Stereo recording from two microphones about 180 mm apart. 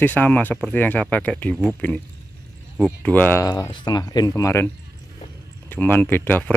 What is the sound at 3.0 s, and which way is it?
Speech, 10° left (ahead or behind).